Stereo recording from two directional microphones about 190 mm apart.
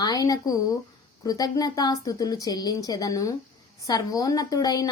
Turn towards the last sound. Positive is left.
turn(degrees=20)  # may be behind; listen again after turning